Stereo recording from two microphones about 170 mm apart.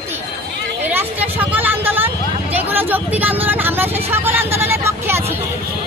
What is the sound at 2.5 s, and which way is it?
Vehicle, 10° right (ahead or behind).